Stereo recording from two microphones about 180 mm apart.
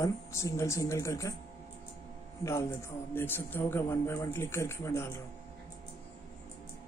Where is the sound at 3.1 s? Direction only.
10° left (ahead or behind).